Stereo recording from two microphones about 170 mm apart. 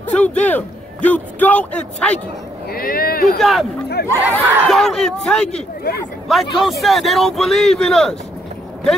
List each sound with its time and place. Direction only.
0.1 s a man's voice: 10° left (ahead or behind)
2.7 s speech: 60° left (ahead or behind)
3.3 s a man's voice: centre (ahead or behind)